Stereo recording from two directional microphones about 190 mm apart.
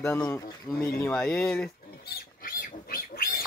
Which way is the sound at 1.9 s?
55° left (ahead or behind).